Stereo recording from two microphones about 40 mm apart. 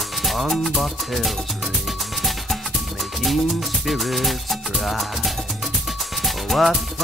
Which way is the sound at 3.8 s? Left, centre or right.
Centre.